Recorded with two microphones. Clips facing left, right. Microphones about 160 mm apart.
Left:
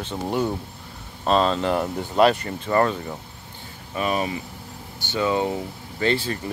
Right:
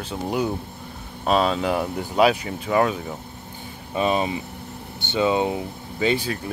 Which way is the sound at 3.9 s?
25° right (ahead or behind).